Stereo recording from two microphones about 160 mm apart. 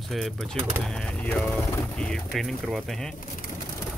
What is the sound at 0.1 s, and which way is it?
Speech, centre (ahead or behind).